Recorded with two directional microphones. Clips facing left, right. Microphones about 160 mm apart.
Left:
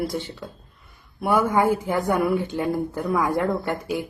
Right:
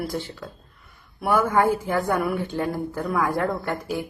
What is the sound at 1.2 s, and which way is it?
A woman's voice, 20° left (ahead or behind).